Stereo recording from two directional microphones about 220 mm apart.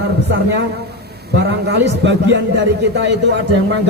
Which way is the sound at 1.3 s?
50° right (ahead or behind).